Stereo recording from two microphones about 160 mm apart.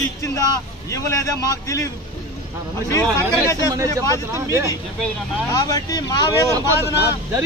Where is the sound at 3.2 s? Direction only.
15° right (ahead or behind).